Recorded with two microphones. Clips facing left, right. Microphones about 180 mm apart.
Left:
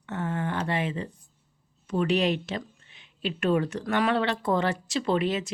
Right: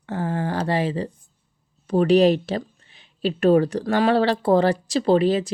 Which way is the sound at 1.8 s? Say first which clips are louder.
Right 9 dB; 35° right (ahead or behind).